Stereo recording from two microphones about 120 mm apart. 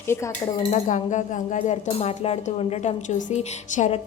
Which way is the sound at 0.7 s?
90° left.